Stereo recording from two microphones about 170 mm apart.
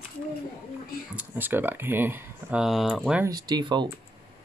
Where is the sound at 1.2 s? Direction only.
10° right (ahead or behind).